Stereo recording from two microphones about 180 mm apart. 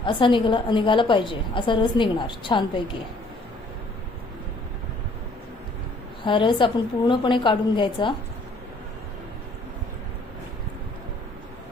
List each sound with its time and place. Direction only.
0.0 s a woman's voice: 25° left (ahead or behind)
6.2 s a woman's voice: 25° left (ahead or behind)